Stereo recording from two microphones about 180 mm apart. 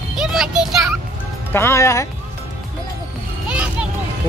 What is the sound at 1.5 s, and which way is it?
Speech, 15° left (ahead or behind).